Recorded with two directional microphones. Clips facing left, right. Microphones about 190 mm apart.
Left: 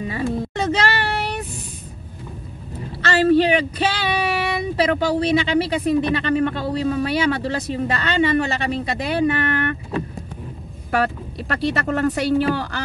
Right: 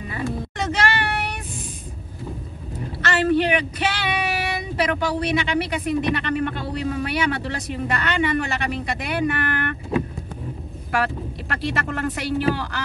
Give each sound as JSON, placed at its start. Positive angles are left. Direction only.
{"t": 0.1, "sound": "a sound", "side_deg": 30}
{"t": 3.2, "sound": "child singing", "side_deg": 30}
{"t": 11.7, "sound": "speech", "side_deg": 35}